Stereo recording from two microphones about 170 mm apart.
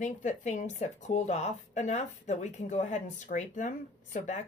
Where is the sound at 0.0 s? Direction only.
45° left (ahead or behind).